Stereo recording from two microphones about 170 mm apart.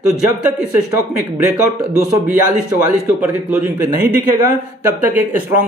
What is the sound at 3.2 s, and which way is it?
Speech, 10° right (ahead or behind).